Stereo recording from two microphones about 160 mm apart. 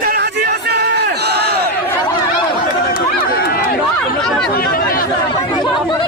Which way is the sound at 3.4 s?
70° left (ahead or behind).